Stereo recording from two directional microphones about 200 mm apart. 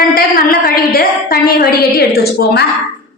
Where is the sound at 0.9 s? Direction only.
50° left (ahead or behind).